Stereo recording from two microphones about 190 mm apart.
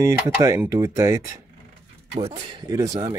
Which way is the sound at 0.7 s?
15° right (ahead or behind).